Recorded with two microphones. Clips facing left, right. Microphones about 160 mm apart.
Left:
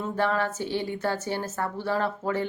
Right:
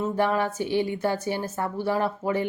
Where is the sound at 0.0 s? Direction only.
15° right (ahead or behind).